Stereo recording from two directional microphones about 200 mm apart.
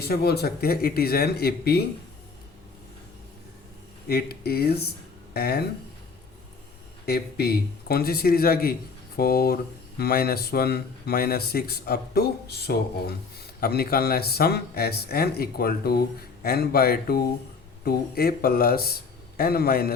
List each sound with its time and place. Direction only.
0.0 s speech: 50° left (ahead or behind)
4.1 s speech: 50° left (ahead or behind)
7.0 s speech: 50° left (ahead or behind)